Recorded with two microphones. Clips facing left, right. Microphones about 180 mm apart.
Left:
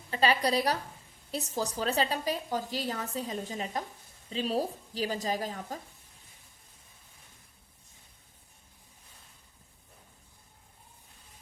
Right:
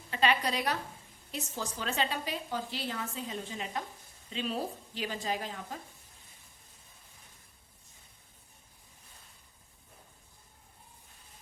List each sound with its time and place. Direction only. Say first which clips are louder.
0.1 s a woman's voice: left 3 dB; 35° left (ahead or behind)